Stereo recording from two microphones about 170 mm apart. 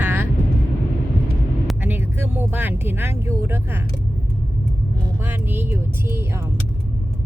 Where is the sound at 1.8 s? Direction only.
10° right (ahead or behind).